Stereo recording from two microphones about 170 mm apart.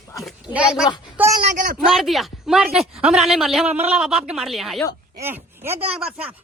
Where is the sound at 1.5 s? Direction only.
50° right (ahead or behind).